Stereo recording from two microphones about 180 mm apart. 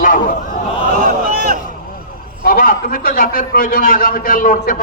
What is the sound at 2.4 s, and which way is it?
A man's voice, 50° left (ahead or behind).